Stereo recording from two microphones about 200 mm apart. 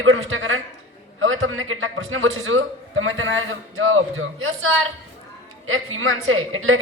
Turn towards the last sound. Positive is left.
turn(degrees=-85)